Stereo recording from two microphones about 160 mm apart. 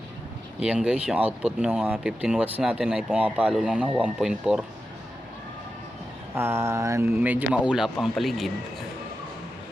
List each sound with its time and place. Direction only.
0.6 s speech: 5° right (ahead or behind)
6.3 s speech: 15° right (ahead or behind); by 8.5 s centre (ahead or behind)